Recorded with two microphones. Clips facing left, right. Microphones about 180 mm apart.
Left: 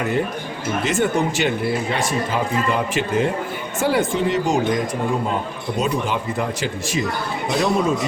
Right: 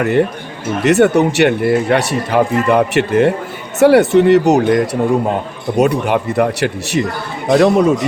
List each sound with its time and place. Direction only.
0.0 s speech: 65° right (ahead or behind)